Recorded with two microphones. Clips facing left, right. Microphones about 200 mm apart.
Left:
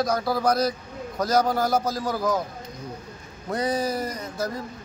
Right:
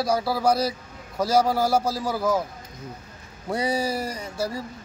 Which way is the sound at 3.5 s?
10° right (ahead or behind).